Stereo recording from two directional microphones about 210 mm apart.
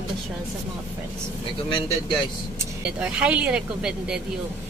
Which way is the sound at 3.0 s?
5° right (ahead or behind).